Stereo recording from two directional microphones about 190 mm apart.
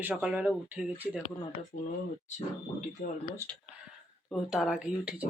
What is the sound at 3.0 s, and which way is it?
Speech, 40° left (ahead or behind).